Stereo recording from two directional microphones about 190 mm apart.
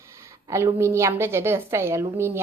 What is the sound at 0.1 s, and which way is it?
A woman's voice, 15° right (ahead or behind).